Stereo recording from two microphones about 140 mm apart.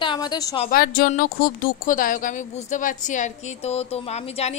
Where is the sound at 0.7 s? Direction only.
90° left; by 4.5 s 50° left (ahead or behind).